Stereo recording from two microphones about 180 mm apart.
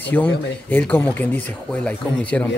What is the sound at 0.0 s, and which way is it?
Speech, 10° left (ahead or behind).